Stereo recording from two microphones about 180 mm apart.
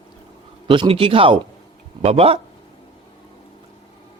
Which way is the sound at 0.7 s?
30° right (ahead or behind).